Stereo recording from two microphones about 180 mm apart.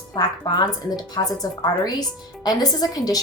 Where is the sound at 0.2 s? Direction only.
20° left (ahead or behind).